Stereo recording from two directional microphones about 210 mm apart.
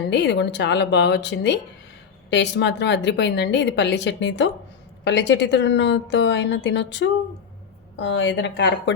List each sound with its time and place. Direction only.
0.1 s a woman's voice: 55° left (ahead or behind)